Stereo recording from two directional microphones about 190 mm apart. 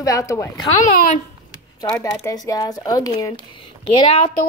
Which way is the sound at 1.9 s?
15° left (ahead or behind).